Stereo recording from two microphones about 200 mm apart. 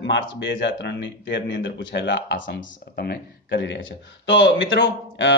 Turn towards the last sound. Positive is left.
turn(degrees=60)  # may be behind; listen again after turning